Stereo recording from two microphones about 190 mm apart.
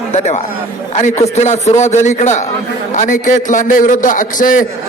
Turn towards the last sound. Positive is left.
turn(degrees=45)  # may be behind; listen again after turning